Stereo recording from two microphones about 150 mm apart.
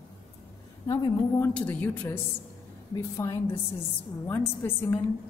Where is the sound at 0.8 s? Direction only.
20° left (ahead or behind).